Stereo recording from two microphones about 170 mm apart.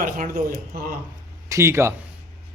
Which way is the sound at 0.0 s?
55° right (ahead or behind).